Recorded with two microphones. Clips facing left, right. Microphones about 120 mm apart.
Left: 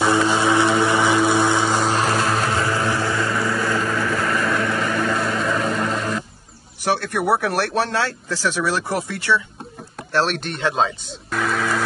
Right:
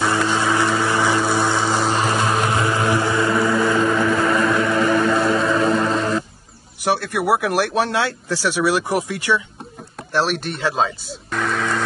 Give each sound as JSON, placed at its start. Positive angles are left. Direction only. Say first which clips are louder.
{"t": 0.0, "sound": "vehicle", "louder": "left 2 dB", "side_deg": 10}
{"t": 1.6, "sound": "vehicle", "louder": "even", "side_deg": -5}
{"t": 2.5, "sound": "vehicle", "louder": "right 2 dB", "side_deg": -20}
{"t": 5.8, "sound": "a sound", "louder": "right 4 dB", "side_deg": -25}
{"t": 6.8, "sound": "speech", "louder": "right 1 dB", "side_deg": -10}